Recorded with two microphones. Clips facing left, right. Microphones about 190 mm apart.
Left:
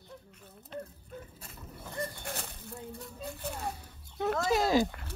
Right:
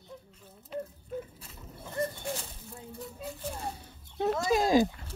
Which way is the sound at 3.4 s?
65° left (ahead or behind).